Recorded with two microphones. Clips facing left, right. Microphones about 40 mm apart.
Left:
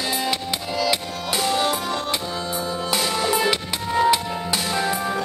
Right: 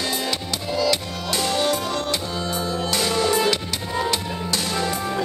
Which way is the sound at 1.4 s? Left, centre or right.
Centre.